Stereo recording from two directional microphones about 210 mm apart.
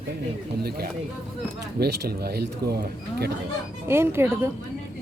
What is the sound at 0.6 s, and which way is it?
Speech, 50° right (ahead or behind).